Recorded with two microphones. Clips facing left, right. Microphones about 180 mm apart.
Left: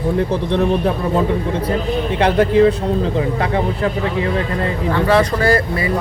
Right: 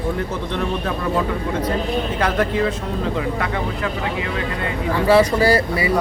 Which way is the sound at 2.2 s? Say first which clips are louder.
Left 9 dB; 30° left (ahead or behind).